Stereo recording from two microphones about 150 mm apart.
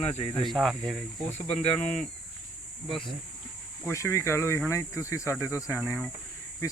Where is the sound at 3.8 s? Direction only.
20° left (ahead or behind).